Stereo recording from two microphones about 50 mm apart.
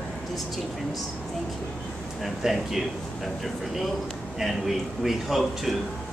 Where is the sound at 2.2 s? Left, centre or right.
Centre.